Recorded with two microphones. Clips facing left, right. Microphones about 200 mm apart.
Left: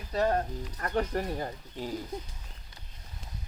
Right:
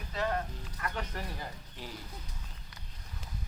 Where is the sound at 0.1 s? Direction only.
40° left (ahead or behind).